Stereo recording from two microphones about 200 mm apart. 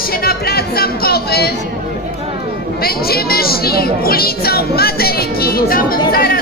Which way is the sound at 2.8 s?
50° left (ahead or behind).